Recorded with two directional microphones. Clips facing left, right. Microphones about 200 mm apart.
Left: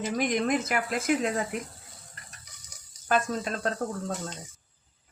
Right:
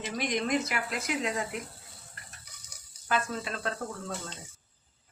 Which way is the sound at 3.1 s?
45° left (ahead or behind).